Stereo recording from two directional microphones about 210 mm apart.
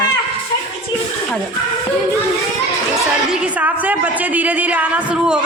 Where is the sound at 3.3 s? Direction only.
5° right (ahead or behind).